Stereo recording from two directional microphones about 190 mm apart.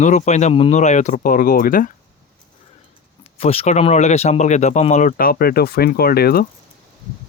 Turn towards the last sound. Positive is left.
turn(degrees=55)  # may be behind; listen again after turning